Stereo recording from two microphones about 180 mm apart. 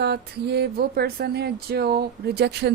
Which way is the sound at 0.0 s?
65° right (ahead or behind).